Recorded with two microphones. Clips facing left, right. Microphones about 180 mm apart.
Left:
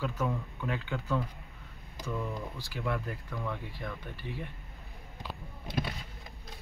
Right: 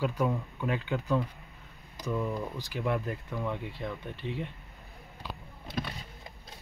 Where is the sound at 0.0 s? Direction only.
15° right (ahead or behind).